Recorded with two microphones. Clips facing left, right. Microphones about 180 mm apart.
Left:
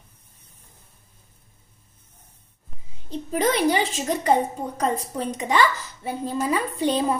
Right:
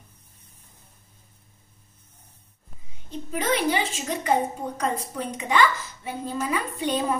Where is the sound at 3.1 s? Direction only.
35° left (ahead or behind).